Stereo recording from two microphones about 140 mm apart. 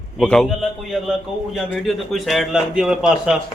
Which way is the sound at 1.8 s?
Centre (ahead or behind).